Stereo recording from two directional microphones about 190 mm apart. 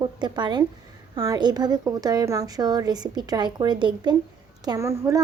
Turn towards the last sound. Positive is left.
turn(degrees=-15)  # may be behind; listen again after turning